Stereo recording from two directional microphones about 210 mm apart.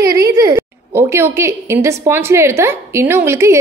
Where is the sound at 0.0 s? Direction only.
15° right (ahead or behind).